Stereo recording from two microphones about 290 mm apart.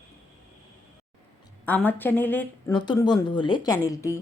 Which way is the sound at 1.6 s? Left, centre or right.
Centre.